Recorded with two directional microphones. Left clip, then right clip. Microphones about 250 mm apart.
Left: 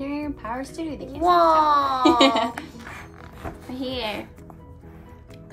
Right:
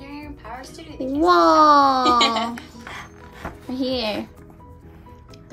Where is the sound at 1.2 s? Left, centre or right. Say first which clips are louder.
Right 3 dB; right.